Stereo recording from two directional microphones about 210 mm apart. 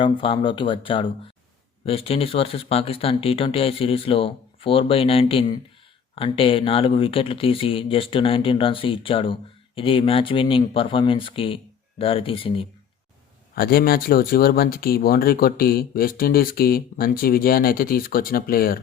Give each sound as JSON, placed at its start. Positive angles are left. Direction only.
{"t": 0.0, "sound": "speech", "side_deg": 25}
{"t": 13.6, "sound": "speech", "side_deg": 45}